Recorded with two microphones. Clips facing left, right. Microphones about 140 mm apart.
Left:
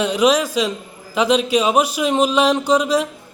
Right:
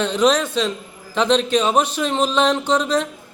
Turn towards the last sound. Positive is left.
turn(degrees=10)  # may be behind; listen again after turning